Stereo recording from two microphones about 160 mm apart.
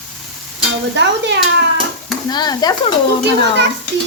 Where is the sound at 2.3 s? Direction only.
25° left (ahead or behind).